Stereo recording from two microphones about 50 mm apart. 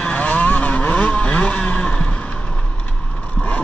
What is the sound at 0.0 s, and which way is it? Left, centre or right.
Vehicle, left.